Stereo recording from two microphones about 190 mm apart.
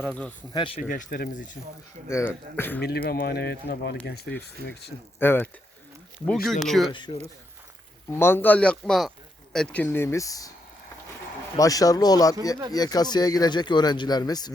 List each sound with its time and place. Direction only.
0.0 s speech: 5° left (ahead or behind)
0.5 s speech: 25° left (ahead or behind)
0.8 s speech: 45° left (ahead or behind)
2.0 s speech: 15° left (ahead or behind)
2.8 s speech: 55° left (ahead or behind)
5.2 s speech: 10° left (ahead or behind)
6.9 s speech: 25° left (ahead or behind)
8.1 s speech: 10° left (ahead or behind)
11.5 s speech: 20° left (ahead or behind)